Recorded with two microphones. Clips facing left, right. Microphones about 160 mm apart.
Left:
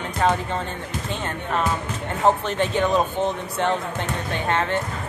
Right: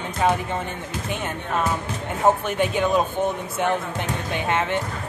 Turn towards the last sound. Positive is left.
turn(degrees=-15)  # may be behind; listen again after turning